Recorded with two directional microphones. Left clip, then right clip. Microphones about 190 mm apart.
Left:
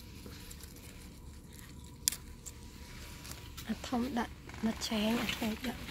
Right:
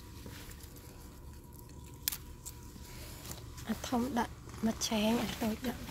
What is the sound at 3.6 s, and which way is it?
Speech, 15° right (ahead or behind).